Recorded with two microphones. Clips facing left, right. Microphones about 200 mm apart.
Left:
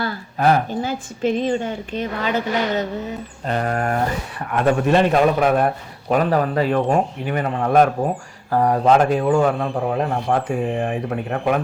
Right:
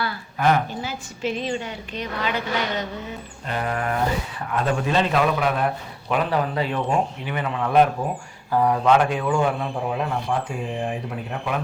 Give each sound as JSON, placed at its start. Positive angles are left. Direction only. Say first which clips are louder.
{"t": 0.0, "sound": "a sound", "louder": "left 3 dB", "side_deg": 40}
{"t": 0.7, "sound": "a man's voice", "louder": "left 7 dB", "side_deg": 50}
{"t": 4.5, "sound": "a man's voice", "louder": "left 6 dB", "side_deg": 60}